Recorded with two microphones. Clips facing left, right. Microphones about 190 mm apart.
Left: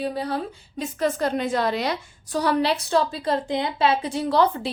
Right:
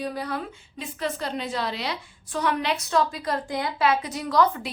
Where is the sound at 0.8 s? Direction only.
45° left (ahead or behind); by 4.7 s 30° left (ahead or behind).